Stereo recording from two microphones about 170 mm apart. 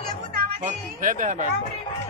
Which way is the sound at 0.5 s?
50° right (ahead or behind).